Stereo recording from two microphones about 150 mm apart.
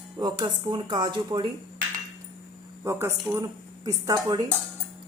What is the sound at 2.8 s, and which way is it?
A woman's voice, 15° right (ahead or behind).